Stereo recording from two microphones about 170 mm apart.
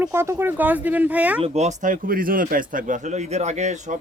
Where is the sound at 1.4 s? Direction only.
40° right (ahead or behind).